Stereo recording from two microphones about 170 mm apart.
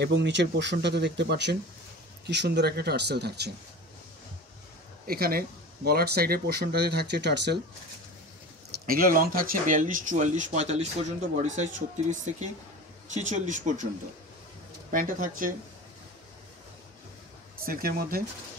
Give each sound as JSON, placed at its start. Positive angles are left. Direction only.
{"t": 0.0, "sound": "speech", "side_deg": -90}
{"t": 5.0, "sound": "speech", "side_deg": -60}
{"t": 8.8, "sound": "speech", "side_deg": -60}
{"t": 14.9, "sound": "speech", "side_deg": -55}
{"t": 17.6, "sound": "speech", "side_deg": -60}